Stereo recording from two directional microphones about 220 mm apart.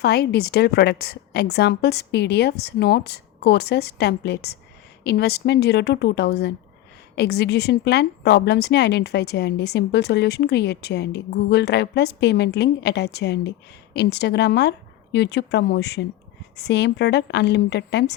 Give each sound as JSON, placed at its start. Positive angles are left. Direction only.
{"t": 0.0, "sound": "a woman's voice", "side_deg": 45}